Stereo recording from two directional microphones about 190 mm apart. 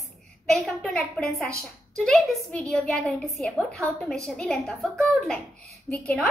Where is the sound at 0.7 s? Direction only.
Centre (ahead or behind).